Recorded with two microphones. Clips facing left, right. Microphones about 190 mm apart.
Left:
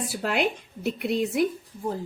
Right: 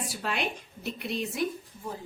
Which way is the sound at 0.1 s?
60° left (ahead or behind).